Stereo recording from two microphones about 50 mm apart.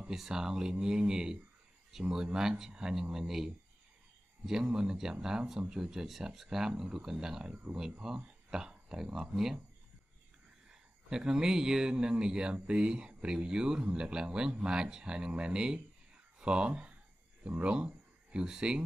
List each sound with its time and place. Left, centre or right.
0.1 s a man's voice: centre
4.7 s a man's voice: centre
10.7 s a man's voice: centre